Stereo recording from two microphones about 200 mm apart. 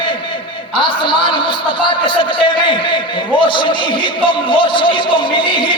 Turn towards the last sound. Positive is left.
turn(degrees=25)  # may be behind; listen again after turning